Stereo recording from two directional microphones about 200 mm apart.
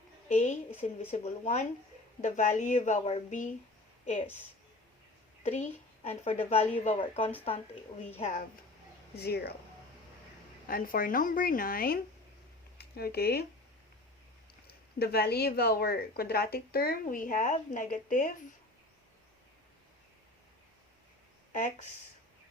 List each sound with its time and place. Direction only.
0.3 s a woman's voice: 35° left (ahead or behind)
5.5 s a woman's voice: 35° left (ahead or behind)
9.1 s speech: 55° left (ahead or behind)
10.7 s speech: 45° left (ahead or behind)
14.7 s speech: 50° left (ahead or behind)
21.5 s speech: 40° left (ahead or behind)